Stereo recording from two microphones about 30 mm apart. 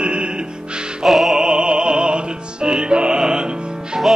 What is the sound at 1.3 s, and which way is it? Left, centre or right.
Music, right.